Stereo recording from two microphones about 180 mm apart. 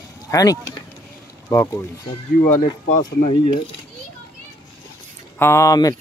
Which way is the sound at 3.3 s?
25° left (ahead or behind).